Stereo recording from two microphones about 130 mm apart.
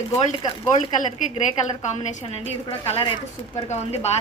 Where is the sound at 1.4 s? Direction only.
65° left (ahead or behind).